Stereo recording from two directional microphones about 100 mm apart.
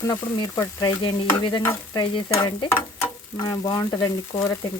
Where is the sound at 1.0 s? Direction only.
55° left (ahead or behind).